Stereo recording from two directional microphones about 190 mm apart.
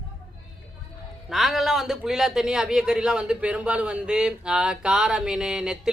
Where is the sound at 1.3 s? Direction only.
Centre (ahead or behind).